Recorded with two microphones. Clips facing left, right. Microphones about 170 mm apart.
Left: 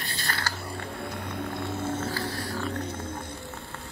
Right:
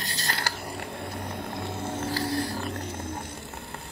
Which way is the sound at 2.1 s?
35° right (ahead or behind).